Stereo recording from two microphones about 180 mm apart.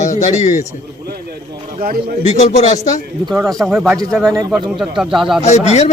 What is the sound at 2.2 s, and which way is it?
Speech, 40° left (ahead or behind).